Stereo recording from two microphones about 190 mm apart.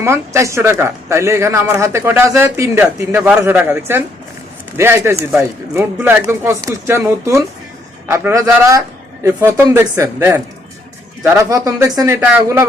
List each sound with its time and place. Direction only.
0.0 s speech: 15° right (ahead or behind)